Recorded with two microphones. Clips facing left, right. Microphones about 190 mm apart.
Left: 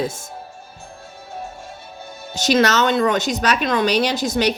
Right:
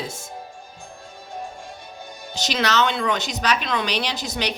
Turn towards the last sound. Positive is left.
turn(degrees=45)  # may be behind; listen again after turning